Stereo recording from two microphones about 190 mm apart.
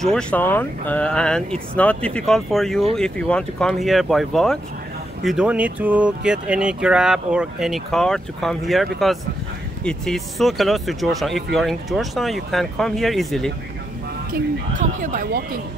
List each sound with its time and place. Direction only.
0.0 s speech: 5° left (ahead or behind)
14.3 s speech: 45° right (ahead or behind)